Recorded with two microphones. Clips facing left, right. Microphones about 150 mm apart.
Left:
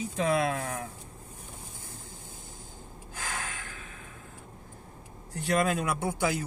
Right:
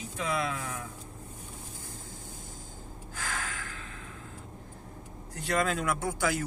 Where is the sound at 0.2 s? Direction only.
50° left (ahead or behind).